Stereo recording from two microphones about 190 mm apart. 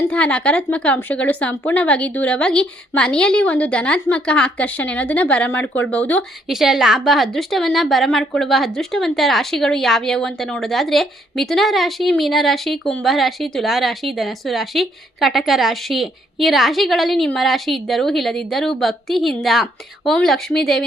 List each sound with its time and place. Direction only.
0.1 s speech: 5° left (ahead or behind)